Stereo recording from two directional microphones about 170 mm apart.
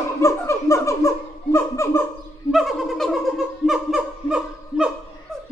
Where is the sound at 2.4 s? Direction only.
Centre (ahead or behind).